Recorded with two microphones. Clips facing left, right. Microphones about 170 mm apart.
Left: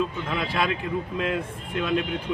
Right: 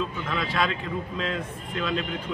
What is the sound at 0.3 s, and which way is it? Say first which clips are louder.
Speech: left 1 dB; 10° left (ahead or behind).